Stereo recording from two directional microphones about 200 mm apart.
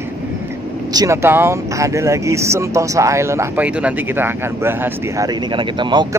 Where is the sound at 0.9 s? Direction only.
15° right (ahead or behind).